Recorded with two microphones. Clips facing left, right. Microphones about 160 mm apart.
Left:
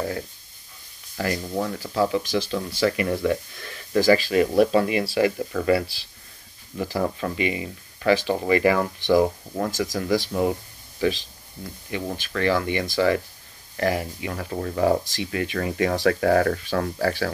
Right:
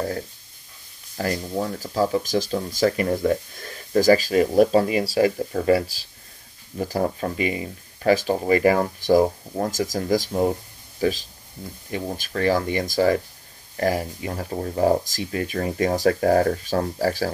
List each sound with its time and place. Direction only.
1.1 s speech: 35° right (ahead or behind)